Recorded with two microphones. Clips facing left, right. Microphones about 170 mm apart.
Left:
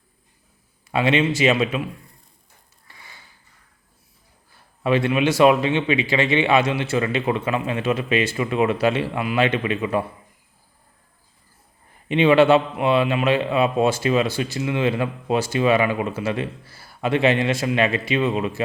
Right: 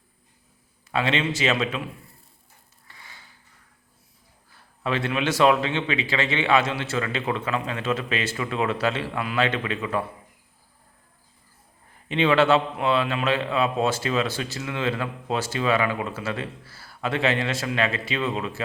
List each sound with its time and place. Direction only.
0.9 s a man's voice: 15° left (ahead or behind)
4.8 s a man's voice: 15° left (ahead or behind)
12.0 s a man's voice: 15° left (ahead or behind)